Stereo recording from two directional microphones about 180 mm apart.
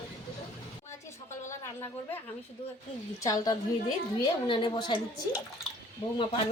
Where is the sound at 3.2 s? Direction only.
20° left (ahead or behind).